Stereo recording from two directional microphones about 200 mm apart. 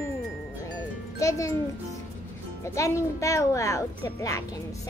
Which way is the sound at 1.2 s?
15° left (ahead or behind).